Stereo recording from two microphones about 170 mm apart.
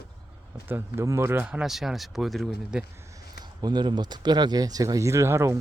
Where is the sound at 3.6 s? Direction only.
25° right (ahead or behind).